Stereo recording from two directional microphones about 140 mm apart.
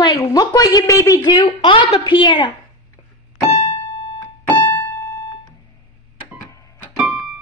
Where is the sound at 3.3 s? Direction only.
25° left (ahead or behind).